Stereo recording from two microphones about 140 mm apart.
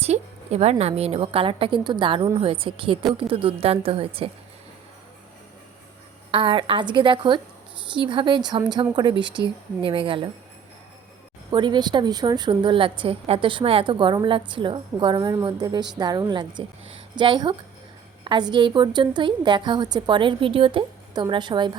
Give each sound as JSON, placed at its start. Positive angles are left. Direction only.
{"t": 0.0, "sound": "a woman's voice", "side_deg": -50}
{"t": 6.3, "sound": "a woman's voice", "side_deg": -35}
{"t": 11.5, "sound": "a woman's voice", "side_deg": -35}